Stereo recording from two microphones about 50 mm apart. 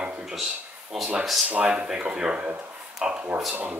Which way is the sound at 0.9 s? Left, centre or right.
Centre.